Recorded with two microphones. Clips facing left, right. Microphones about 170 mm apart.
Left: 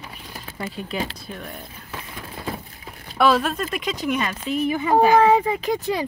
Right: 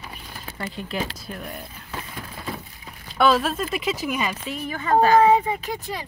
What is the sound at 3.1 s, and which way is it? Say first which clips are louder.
Speech: left 1 dB; centre (ahead or behind).